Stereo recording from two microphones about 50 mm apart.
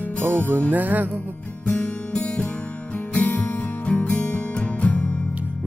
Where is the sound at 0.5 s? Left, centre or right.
Right.